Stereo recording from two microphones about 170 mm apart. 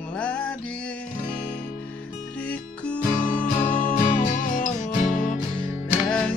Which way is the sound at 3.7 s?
50° left (ahead or behind).